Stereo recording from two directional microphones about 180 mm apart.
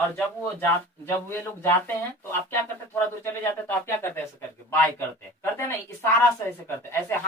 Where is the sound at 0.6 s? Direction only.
15° left (ahead or behind).